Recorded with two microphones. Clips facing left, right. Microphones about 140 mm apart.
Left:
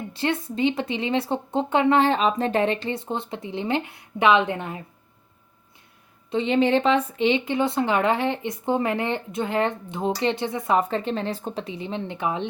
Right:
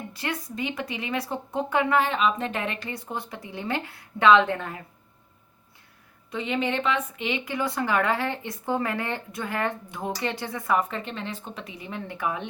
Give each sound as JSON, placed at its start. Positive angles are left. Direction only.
{"t": 0.1, "sound": "speech", "side_deg": 25}
{"t": 6.3, "sound": "speech", "side_deg": 30}